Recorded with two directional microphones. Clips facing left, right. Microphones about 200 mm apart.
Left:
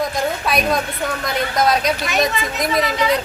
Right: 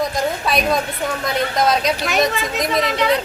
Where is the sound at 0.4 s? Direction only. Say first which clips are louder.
Even; centre (ahead or behind).